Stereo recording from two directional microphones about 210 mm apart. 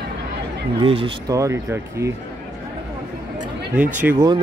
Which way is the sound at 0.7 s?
25° right (ahead or behind).